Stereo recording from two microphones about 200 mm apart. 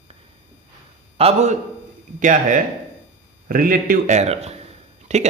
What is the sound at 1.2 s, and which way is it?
Speech, 30° right (ahead or behind).